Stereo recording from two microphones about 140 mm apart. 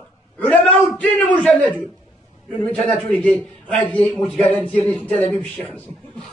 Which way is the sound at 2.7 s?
5° left (ahead or behind).